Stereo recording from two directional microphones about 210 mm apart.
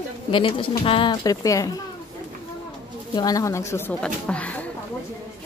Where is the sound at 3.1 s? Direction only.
15° left (ahead or behind).